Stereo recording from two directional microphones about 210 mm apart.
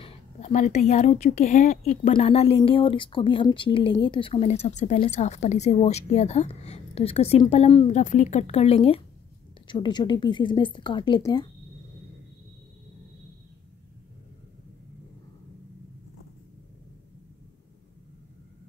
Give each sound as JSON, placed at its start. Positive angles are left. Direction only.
{"t": 0.0, "sound": "a woman's voice", "side_deg": 30}